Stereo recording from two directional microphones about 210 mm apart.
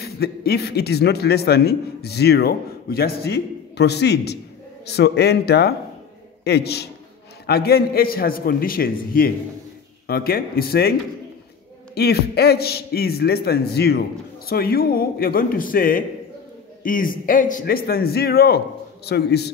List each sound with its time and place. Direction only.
0.0 s a man's voice: 50° left (ahead or behind)